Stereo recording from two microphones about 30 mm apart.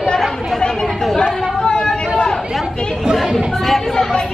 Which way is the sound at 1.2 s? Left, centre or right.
Left.